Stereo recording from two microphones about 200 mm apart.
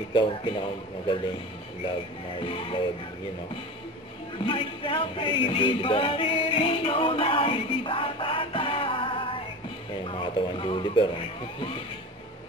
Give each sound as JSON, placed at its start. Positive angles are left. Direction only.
{"t": 0.1, "sound": "speech", "side_deg": 25}
{"t": 2.4, "sound": "speech", "side_deg": 25}
{"t": 4.5, "sound": "music", "side_deg": 25}
{"t": 10.0, "sound": "speech", "side_deg": 25}